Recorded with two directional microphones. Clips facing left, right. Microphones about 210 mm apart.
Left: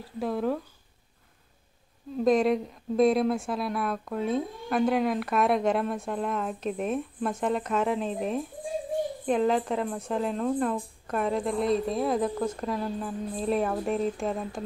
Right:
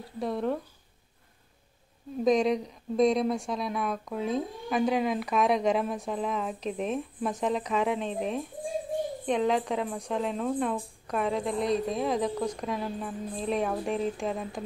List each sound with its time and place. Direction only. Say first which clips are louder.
0.2 s speech: left 1 dB; centre (ahead or behind)
2.2 s speech: left 1 dB; 5° left (ahead or behind)